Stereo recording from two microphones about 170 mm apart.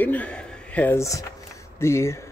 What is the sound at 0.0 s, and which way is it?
Speech, 10° left (ahead or behind).